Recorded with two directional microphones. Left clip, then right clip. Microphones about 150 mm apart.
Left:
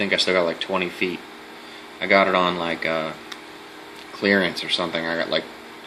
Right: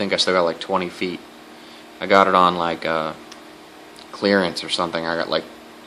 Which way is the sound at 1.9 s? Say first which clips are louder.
Right 3 dB; 20° right (ahead or behind).